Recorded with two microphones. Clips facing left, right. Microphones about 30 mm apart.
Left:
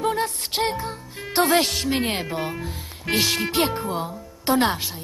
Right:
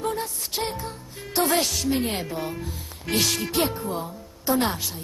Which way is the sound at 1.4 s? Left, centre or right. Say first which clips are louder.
Left 3 dB; left.